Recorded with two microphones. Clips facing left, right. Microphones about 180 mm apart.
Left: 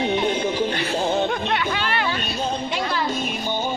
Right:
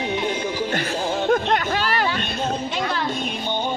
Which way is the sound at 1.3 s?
45° right (ahead or behind).